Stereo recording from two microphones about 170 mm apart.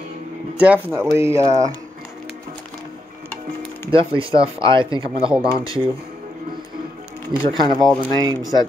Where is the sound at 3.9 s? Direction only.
30° right (ahead or behind).